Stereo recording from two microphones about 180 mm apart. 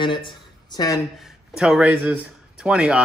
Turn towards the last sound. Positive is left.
turn(degrees=-5)  # may be behind; listen again after turning